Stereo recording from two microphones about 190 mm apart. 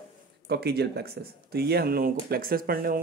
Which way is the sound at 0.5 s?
55° right (ahead or behind).